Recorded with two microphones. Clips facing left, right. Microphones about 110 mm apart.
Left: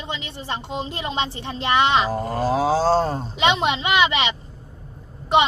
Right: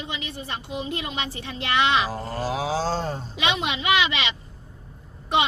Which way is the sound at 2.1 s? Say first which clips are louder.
Left 6 dB; 40° left (ahead or behind).